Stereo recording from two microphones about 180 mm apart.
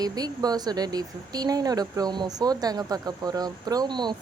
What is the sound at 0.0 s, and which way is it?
Speech, 20° right (ahead or behind).